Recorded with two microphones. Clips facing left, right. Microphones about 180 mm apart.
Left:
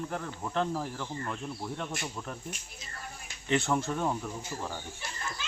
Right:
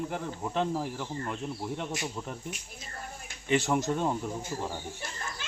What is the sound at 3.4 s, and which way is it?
Speech, 10° right (ahead or behind).